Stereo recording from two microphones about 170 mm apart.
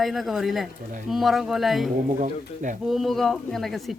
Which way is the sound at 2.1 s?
45° right (ahead or behind).